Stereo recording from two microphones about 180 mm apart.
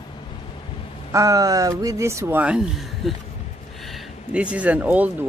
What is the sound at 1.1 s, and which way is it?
Speech, 20° right (ahead or behind).